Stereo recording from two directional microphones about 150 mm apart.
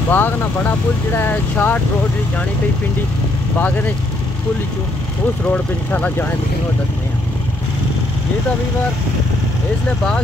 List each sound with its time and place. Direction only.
0.1 s speech: 10° left (ahead or behind)
3.5 s speech: 10° left (ahead or behind)
5.5 s speech: 10° left (ahead or behind)
9.8 s speech: 10° left (ahead or behind)